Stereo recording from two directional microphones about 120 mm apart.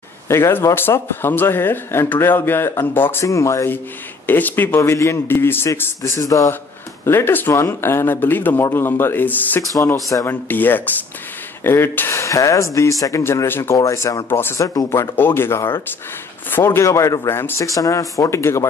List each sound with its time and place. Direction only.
0.3 s speech: 20° left (ahead or behind)